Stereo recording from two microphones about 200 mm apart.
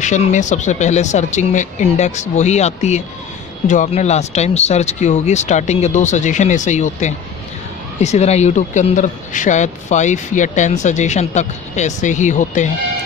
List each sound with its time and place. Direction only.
0.0 s a man's voice: 35° left (ahead or behind)